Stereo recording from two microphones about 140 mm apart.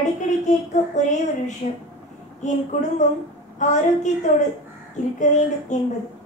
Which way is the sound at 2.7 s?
60° left (ahead or behind).